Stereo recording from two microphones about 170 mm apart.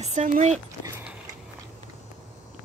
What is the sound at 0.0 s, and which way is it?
Speech, 45° right (ahead or behind).